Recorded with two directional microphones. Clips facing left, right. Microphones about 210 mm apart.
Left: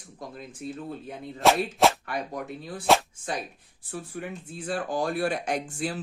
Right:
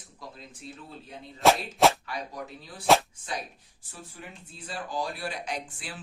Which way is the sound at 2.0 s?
55° left (ahead or behind).